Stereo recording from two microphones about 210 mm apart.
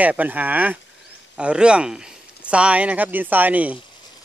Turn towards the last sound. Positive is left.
turn(degrees=-5)  # may be behind; listen again after turning